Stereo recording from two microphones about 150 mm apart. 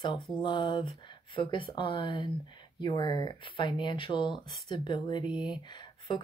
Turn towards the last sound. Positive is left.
turn(degrees=30)  # may be behind; listen again after turning